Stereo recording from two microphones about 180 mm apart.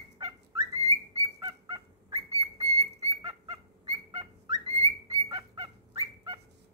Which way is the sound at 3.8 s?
25° right (ahead or behind).